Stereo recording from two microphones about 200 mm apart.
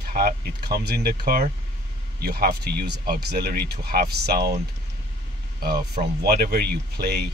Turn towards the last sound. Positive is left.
turn(degrees=-55)  # may be behind; listen again after turning